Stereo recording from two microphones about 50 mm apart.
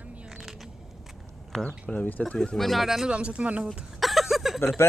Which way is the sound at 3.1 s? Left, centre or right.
Right.